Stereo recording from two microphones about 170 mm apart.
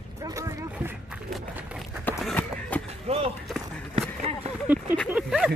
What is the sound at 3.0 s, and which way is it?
Skateboard, 35° right (ahead or behind).